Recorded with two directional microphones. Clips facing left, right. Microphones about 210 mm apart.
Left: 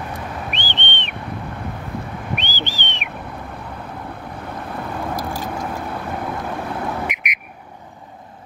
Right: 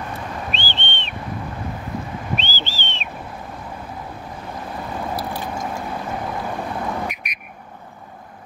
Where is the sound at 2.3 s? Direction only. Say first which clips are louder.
Left 2 dB; 15° left (ahead or behind).